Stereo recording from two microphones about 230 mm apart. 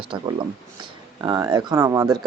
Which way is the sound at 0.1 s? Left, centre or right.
Right.